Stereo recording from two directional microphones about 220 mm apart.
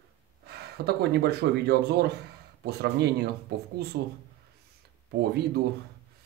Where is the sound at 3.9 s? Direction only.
45° right (ahead or behind).